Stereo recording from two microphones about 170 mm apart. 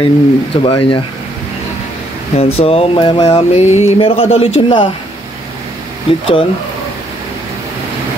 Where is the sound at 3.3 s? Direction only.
40° left (ahead or behind).